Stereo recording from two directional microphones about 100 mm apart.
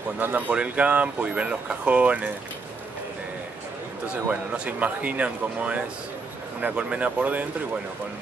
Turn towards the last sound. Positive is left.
turn(degrees=-15)  # may be behind; listen again after turning